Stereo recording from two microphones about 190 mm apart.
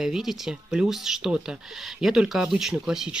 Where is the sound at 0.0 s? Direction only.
Centre (ahead or behind).